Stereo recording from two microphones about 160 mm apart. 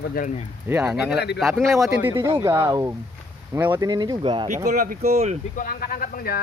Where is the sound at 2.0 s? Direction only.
20° right (ahead or behind).